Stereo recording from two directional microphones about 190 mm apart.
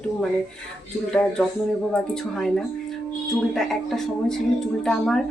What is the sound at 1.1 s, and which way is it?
Speech, 5° left (ahead or behind).